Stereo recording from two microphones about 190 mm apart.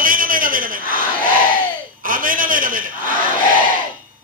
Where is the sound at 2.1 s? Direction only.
45° right (ahead or behind).